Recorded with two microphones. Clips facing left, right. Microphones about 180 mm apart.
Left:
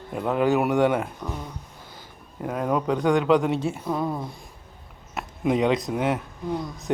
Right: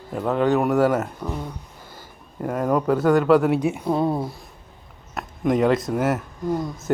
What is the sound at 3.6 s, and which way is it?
Speech, 15° right (ahead or behind).